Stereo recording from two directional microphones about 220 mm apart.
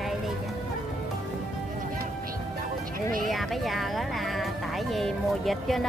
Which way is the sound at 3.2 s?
Centre (ahead or behind).